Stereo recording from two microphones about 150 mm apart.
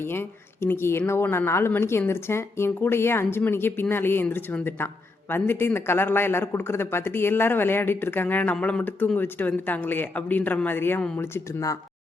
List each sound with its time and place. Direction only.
0.0 s speech: 15° left (ahead or behind)